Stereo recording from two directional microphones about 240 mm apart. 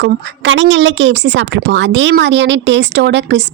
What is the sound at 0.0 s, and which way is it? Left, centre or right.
A woman's voice, right.